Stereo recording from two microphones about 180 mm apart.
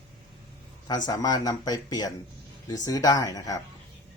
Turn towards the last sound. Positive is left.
turn(degrees=20)  # may be behind; listen again after turning